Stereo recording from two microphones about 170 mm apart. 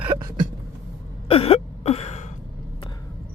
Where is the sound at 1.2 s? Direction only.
35° left (ahead or behind).